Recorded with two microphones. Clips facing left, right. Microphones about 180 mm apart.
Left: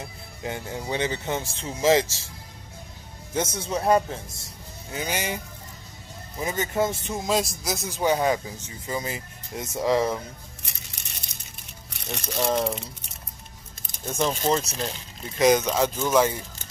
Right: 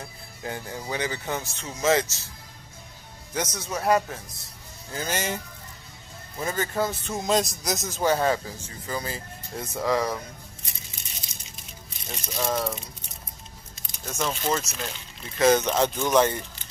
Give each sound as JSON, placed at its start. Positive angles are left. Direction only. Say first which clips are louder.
{"t": 0.4, "sound": "speech", "louder": "left 2 dB", "side_deg": 20}
{"t": 3.3, "sound": "speech", "louder": "left 3 dB", "side_deg": 25}
{"t": 4.9, "sound": "speech", "louder": "even", "side_deg": 15}
{"t": 7.2, "sound": "speech", "louder": "right 1 dB", "side_deg": 5}
{"t": 7.8, "sound": "speech", "louder": "left 1 dB", "side_deg": 15}
{"t": 11.3, "sound": "a sound", "louder": "right 1 dB", "side_deg": 65}
{"t": 12.4, "sound": "speech", "louder": "left 3 dB", "side_deg": 25}
{"t": 14.0, "sound": "speech", "louder": "left 3 dB", "side_deg": 30}
{"t": 15.3, "sound": "speech", "louder": "even", "side_deg": 15}